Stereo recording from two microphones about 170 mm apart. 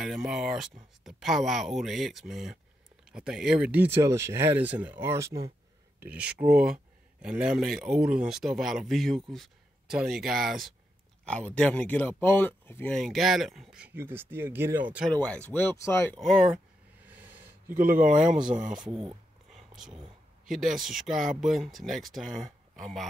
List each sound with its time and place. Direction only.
0.0 s speech: 5° right (ahead or behind)
15.0 s speech: 5° left (ahead or behind)
16.2 s speech: centre (ahead or behind)
17.1 s snort: 10° right (ahead or behind)
17.6 s speech: 60° right (ahead or behind)
18.2 s speech: 5° right (ahead or behind)
18.5 s speech: 50° right (ahead or behind)
20.4 s speech: centre (ahead or behind)